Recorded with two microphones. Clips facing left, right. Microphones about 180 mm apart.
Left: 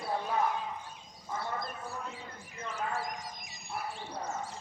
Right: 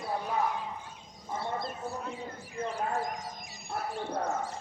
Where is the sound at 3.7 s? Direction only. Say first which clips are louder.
Right 5 dB; 55° right (ahead or behind).